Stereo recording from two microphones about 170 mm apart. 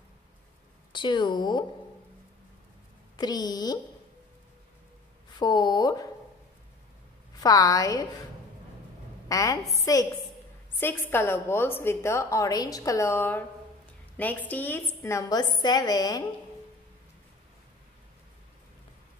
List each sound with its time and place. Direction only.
0.9 s speech: 25° left (ahead or behind)
3.2 s speech: 25° left (ahead or behind)
5.4 s speech: 25° left (ahead or behind)
7.3 s speech: 20° left (ahead or behind)
9.3 s a woman's voice: 20° left (ahead or behind)